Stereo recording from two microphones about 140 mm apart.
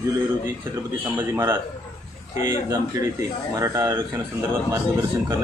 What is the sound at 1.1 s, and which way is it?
Speech, 20° right (ahead or behind).